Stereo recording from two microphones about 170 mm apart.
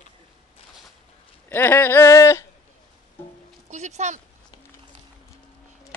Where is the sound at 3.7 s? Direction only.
40° right (ahead or behind).